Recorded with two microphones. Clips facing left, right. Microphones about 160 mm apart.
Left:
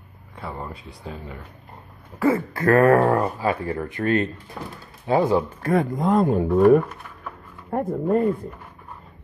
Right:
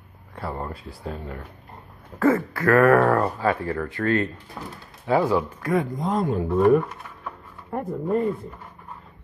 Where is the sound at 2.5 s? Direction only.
25° left (ahead or behind).